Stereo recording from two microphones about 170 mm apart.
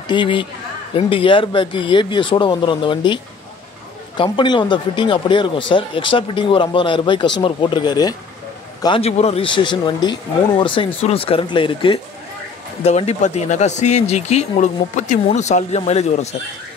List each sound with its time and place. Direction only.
0.1 s speech: 30° left (ahead or behind)
4.2 s speech: 30° left (ahead or behind)